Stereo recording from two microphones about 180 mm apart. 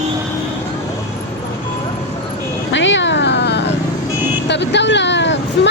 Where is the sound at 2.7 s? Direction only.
90° left; by 3.7 s 70° left (ahead or behind).